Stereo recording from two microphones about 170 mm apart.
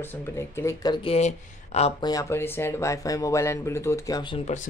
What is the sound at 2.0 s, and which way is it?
Speech, 20° left (ahead or behind).